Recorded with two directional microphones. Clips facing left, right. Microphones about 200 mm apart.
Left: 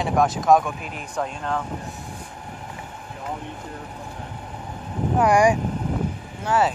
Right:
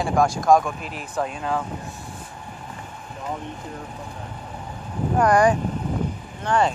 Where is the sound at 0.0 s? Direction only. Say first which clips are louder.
Even; centre (ahead or behind).